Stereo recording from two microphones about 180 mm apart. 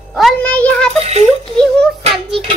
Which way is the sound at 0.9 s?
35° right (ahead or behind).